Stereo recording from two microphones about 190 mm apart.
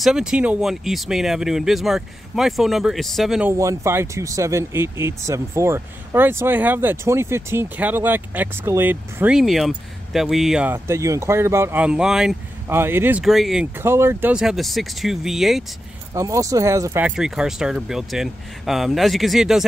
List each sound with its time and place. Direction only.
0.0 s speech: 5° right (ahead or behind)
3.5 s speech: 15° right (ahead or behind)
13.7 s speech: 15° right (ahead or behind)
16.1 s speech: 15° right (ahead or behind)
17.1 s speech: centre (ahead or behind)